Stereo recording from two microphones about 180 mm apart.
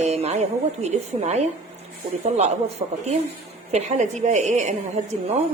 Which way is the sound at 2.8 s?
35° right (ahead or behind).